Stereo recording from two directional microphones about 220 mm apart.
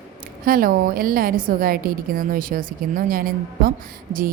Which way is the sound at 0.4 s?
40° right (ahead or behind).